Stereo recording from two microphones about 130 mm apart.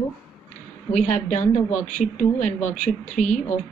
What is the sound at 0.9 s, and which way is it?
Speech, 60° left (ahead or behind).